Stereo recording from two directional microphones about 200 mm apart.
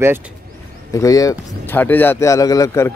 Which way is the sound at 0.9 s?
15° left (ahead or behind).